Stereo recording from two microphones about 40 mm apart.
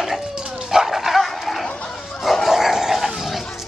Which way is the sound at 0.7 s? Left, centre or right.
Centre.